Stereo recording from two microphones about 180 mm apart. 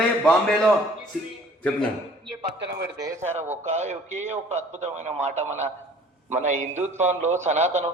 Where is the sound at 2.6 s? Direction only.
75° right (ahead or behind).